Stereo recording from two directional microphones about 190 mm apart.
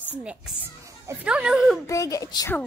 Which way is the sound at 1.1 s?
5° right (ahead or behind).